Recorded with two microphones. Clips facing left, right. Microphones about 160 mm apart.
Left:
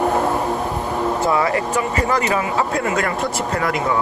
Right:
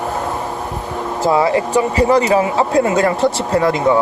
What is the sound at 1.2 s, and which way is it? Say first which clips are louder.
Speech: right 8 dB; 25° right (ahead or behind).